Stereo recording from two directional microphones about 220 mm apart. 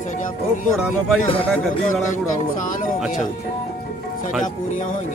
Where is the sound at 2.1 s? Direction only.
35° left (ahead or behind).